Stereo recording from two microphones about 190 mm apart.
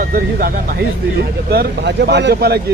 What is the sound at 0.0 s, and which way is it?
Speech, 50° right (ahead or behind).